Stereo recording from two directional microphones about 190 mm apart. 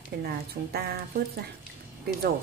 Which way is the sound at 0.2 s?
55° right (ahead or behind).